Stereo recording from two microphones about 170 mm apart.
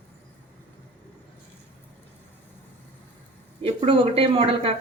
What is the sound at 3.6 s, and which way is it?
Speech, 35° right (ahead or behind).